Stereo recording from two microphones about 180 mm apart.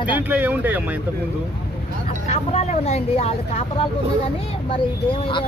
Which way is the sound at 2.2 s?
35° left (ahead or behind).